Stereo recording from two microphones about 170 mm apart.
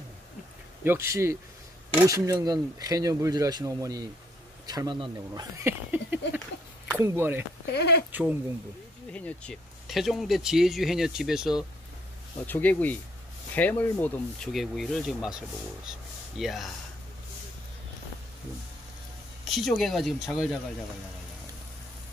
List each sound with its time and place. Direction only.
0.8 s speech: 15° right (ahead or behind)
7.7 s speech: 75° left (ahead or behind)
8.1 s speech: 10° right (ahead or behind)
9.1 s speech: 5° left (ahead or behind)
12.4 s speech: 10° left (ahead or behind)
14.5 s speech: centre (ahead or behind)
19.4 s speech: centre (ahead or behind)